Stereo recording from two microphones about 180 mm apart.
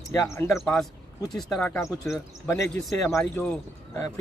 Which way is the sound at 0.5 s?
5° left (ahead or behind).